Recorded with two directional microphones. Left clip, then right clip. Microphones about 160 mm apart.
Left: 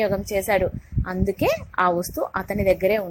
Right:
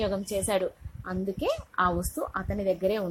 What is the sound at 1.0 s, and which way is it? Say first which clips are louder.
A woman's voice: left 7 dB; 25° left (ahead or behind).